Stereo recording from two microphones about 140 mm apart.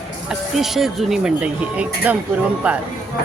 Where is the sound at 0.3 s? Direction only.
Centre (ahead or behind).